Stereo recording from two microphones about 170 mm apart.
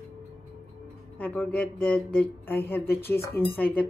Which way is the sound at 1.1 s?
5° left (ahead or behind).